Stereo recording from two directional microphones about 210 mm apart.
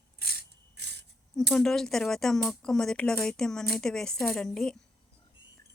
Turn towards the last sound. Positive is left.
turn(degrees=0)  # may be behind; listen again after turning